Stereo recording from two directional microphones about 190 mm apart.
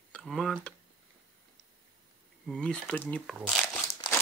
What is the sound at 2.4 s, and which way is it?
Speech, 5° left (ahead or behind).